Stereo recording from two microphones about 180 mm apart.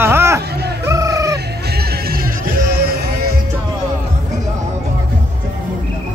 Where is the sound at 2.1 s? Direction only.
60° right (ahead or behind).